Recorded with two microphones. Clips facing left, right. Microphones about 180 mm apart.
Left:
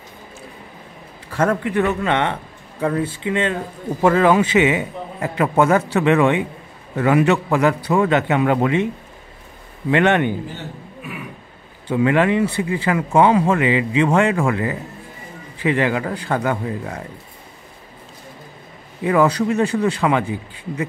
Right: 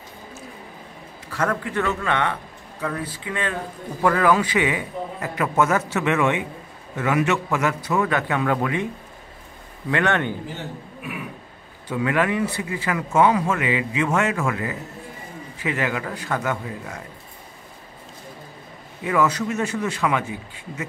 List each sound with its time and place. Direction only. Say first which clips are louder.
1.3 s speech: left 5 dB; 25° left (ahead or behind)
9.8 s speech: left 6 dB; 20° left (ahead or behind)
11.9 s speech: left 6 dB; 30° left (ahead or behind)
19.0 s speech: left 5 dB; 35° left (ahead or behind)